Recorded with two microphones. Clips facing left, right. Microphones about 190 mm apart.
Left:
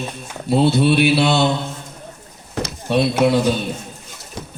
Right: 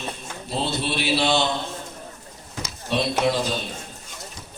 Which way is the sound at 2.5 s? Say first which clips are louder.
Left 7 dB; 60° left (ahead or behind).